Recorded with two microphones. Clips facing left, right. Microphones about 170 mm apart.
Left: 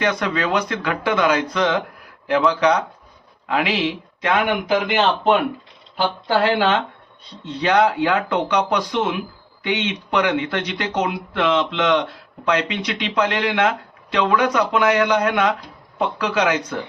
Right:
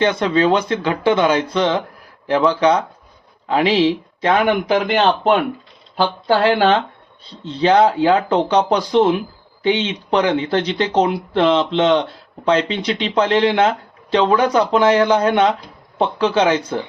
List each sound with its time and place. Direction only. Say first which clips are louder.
0.0 s speech: right 6 dB; 25° right (ahead or behind)